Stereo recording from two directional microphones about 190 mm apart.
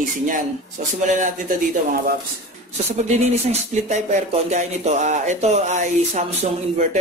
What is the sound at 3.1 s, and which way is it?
Speech, 35° right (ahead or behind).